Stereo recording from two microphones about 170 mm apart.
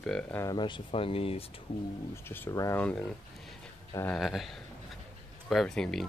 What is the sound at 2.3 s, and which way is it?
Speech, 20° left (ahead or behind).